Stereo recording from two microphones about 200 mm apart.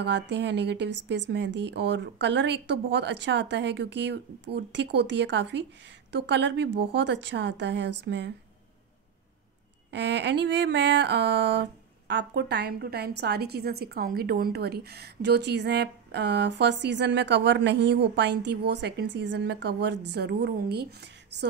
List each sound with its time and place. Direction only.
0.0 s a woman's voice: 60° right (ahead or behind)
9.8 s a woman's voice: 60° right (ahead or behind)